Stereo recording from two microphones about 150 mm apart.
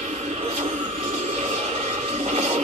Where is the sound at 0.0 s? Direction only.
50° right (ahead or behind).